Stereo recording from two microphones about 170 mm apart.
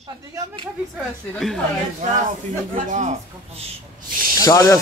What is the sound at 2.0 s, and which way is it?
Speech, 45° right (ahead or behind).